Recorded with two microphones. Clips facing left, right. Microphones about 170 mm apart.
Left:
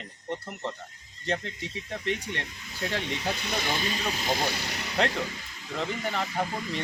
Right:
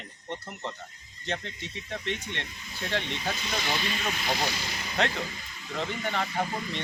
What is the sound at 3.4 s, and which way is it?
Speech, 60° left (ahead or behind).